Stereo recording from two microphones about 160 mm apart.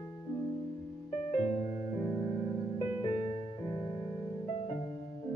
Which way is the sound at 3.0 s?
35° left (ahead or behind).